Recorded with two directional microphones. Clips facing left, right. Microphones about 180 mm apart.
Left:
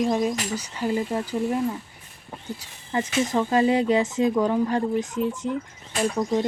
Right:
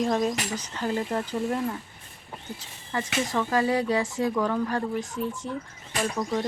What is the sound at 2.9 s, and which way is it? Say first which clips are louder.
Speech: left 4 dB; 20° left (ahead or behind).